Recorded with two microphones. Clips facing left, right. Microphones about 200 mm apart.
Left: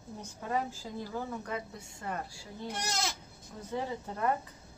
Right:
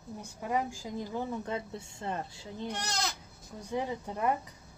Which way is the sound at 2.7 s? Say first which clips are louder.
Left 1 dB; 5° left (ahead or behind).